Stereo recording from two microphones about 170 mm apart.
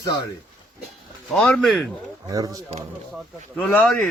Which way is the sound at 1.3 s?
5° left (ahead or behind).